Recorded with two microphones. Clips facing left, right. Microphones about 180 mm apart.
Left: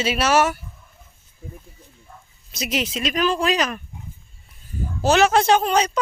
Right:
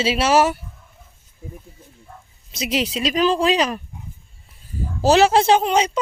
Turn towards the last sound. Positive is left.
turn(degrees=-25)  # may be behind; listen again after turning